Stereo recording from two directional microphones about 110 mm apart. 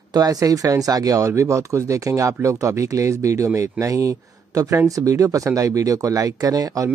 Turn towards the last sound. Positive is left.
turn(degrees=-30)  # may be behind; listen again after turning